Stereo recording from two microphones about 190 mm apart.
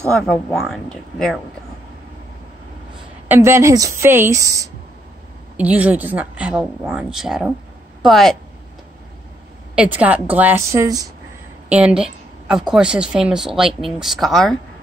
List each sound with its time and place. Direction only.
0.1 s speech: centre (ahead or behind)
3.3 s speech: 15° right (ahead or behind)
9.8 s speech: 5° right (ahead or behind)
11.7 s speech: 5° right (ahead or behind)